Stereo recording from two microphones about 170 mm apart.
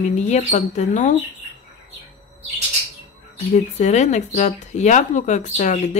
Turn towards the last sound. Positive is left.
turn(degrees=45)  # may be behind; listen again after turning